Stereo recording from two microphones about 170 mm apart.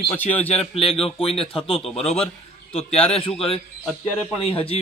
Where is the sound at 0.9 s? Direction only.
35° left (ahead or behind).